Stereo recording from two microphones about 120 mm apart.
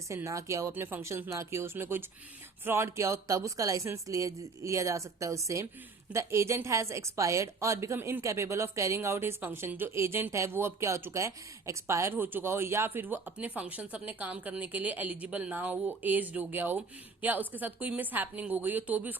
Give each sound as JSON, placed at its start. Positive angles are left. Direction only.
{"t": 0.1, "sound": "a woman's voice", "side_deg": -25}